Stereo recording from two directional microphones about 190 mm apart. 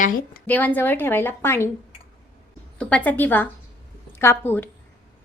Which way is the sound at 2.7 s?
5° left (ahead or behind).